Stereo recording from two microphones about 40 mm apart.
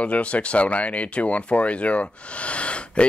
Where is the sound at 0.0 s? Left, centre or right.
Left.